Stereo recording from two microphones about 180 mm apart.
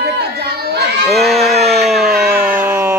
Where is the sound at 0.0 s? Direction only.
65° right (ahead or behind).